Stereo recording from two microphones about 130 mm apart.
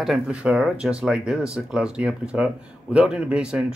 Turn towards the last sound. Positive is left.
turn(degrees=-5)  # may be behind; listen again after turning